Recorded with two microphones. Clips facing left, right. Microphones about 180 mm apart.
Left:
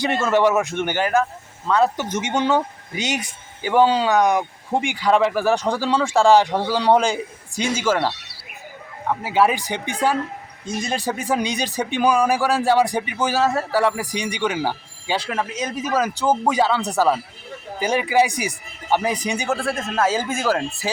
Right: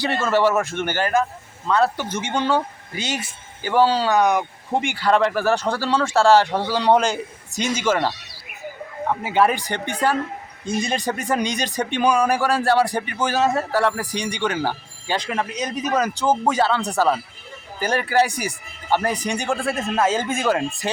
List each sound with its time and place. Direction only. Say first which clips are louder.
0.0 s speech: left 1 dB; 15° left (ahead or behind)
4.2 s a man's voice: right 1 dB; 5° right (ahead or behind)
4.7 s speech: left 1 dB; 10° left (ahead or behind)
9.2 s speech: left 1 dB; 5° left (ahead or behind)
15.3 s a man's voice: even; centre (ahead or behind)